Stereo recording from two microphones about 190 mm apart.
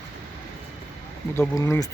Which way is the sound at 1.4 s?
15° left (ahead or behind).